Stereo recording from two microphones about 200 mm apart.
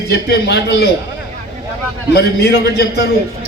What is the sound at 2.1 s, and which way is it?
Speech, 55° left (ahead or behind).